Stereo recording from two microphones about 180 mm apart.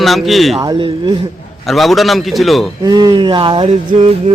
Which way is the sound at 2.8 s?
20° right (ahead or behind).